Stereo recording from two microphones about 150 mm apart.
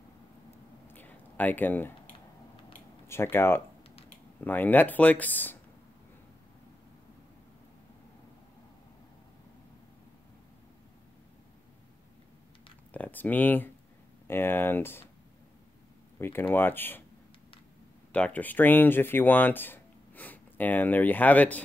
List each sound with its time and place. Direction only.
0.8 s a sound: 10° left (ahead or behind)
3.1 s speech: 15° left (ahead or behind)
12.9 s speech: 10° left (ahead or behind)
16.2 s speech: 15° left (ahead or behind)
18.1 s speech: 10° left (ahead or behind)